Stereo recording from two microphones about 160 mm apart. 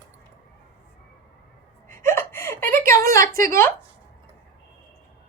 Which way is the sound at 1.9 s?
15° left (ahead or behind).